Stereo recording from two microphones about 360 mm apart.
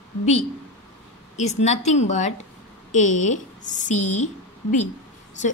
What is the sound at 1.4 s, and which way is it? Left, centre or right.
A woman's voice, centre.